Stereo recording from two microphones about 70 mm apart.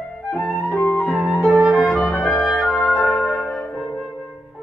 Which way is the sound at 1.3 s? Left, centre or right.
Centre.